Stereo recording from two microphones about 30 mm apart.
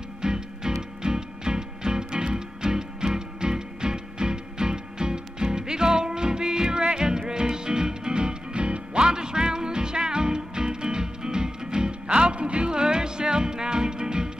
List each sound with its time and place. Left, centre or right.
0.2 s music: right
9.0 s music: right